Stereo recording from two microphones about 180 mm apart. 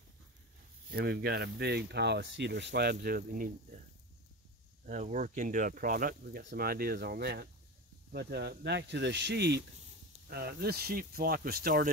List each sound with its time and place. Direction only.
0.9 s speech: 60° right (ahead or behind)
4.8 s speech: 45° right (ahead or behind); by 9.6 s 70° right (ahead or behind)
10.3 s speech: 60° right (ahead or behind)